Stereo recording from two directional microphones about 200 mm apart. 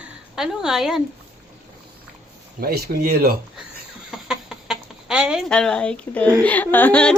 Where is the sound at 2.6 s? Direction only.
50° right (ahead or behind).